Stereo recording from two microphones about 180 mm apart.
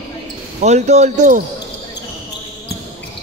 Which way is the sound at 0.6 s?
40° right (ahead or behind).